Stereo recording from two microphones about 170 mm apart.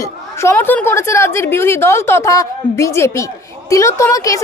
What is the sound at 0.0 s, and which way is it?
A woman's voice, 15° left (ahead or behind).